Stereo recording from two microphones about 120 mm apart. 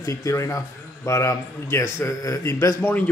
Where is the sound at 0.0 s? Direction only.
25° left (ahead or behind).